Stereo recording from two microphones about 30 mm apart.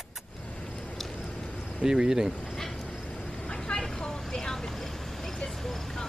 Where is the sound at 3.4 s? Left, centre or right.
Left.